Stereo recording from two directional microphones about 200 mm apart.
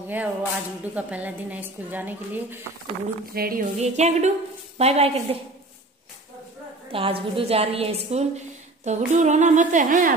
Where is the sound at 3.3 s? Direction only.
45° right (ahead or behind).